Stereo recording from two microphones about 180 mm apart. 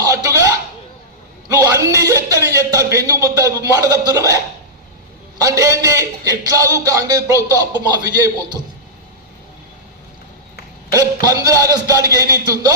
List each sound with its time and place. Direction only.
0.0 s a sound: 20° right (ahead or behind)
1.5 s a man's voice: 20° right (ahead or behind)
5.4 s a man's voice: 20° right (ahead or behind)
10.9 s a man's voice: 20° right (ahead or behind)